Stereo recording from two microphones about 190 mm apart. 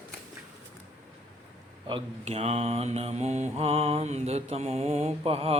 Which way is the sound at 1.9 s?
30° right (ahead or behind).